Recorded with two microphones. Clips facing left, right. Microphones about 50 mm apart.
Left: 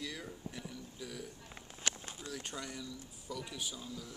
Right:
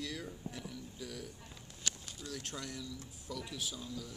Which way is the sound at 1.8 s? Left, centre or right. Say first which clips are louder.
Left 3 dB; left.